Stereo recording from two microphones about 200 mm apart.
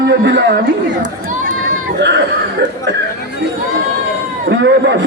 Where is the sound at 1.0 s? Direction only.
40° right (ahead or behind).